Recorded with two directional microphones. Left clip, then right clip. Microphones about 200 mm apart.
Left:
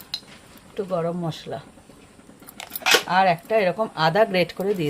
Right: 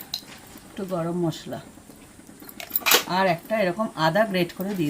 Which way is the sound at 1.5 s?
40° left (ahead or behind).